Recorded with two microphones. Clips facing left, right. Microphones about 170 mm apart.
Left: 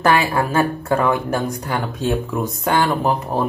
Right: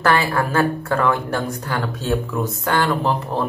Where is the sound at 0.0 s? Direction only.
15° left (ahead or behind).